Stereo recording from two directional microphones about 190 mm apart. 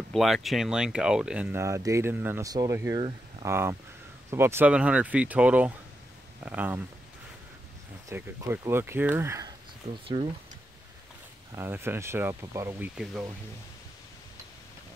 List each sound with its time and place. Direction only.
0.1 s speech: centre (ahead or behind)
8.1 s speech: 15° right (ahead or behind)
10.0 s speech: 25° right (ahead or behind)
11.5 s speech: 10° right (ahead or behind)